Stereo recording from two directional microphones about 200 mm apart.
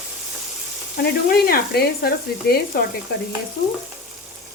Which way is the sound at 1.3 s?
50° left (ahead or behind).